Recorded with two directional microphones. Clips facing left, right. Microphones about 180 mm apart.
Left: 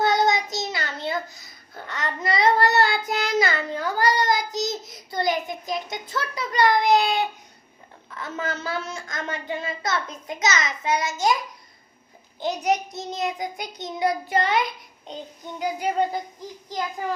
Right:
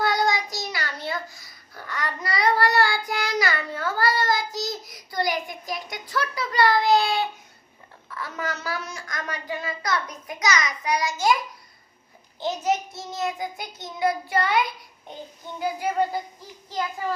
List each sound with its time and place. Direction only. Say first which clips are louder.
0.0 s child singing: left 3 dB; 20° left (ahead or behind)
12.4 s child singing: left 1 dB; 15° left (ahead or behind)
16.6 s a child's voice: even; 15° left (ahead or behind)